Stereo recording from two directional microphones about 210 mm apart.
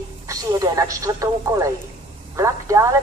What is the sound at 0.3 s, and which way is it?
A woman's voice, 15° right (ahead or behind).